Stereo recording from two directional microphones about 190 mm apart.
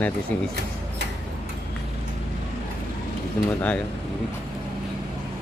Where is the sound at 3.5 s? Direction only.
5° left (ahead or behind).